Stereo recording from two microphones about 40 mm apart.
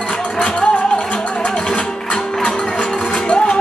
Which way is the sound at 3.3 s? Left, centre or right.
Centre.